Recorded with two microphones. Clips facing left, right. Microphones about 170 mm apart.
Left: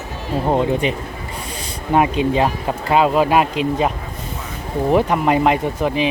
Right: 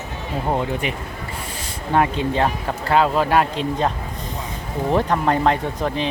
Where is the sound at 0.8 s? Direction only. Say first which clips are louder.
Left 5 dB; 25° left (ahead or behind).